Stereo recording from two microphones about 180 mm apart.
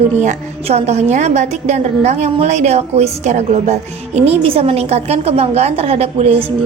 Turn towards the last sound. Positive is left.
turn(degrees=-35)  # may be behind; listen again after turning